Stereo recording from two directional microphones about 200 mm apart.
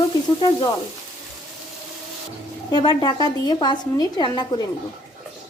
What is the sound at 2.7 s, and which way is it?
A woman's voice, 20° left (ahead or behind).